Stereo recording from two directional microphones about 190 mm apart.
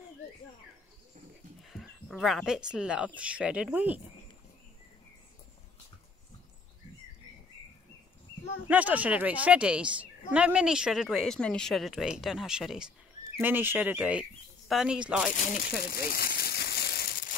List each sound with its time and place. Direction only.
1.6 s speech: centre (ahead or behind)
8.6 s speech: 10° right (ahead or behind)
15.3 s speech: 40° left (ahead or behind)
15.8 s crumpling: 55° left (ahead or behind)